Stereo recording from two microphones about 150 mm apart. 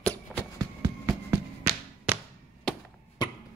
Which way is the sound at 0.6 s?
20° right (ahead or behind).